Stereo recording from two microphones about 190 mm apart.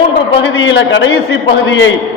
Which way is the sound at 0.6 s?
75° left (ahead or behind).